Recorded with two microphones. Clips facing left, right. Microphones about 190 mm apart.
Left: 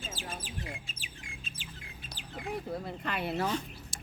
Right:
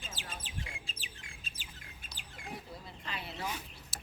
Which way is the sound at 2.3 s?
60° left (ahead or behind).